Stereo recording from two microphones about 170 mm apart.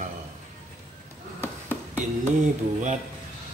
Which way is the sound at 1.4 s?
10° left (ahead or behind).